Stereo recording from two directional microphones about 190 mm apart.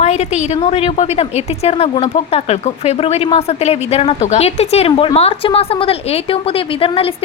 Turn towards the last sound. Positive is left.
turn(degrees=30)  # may be behind; listen again after turning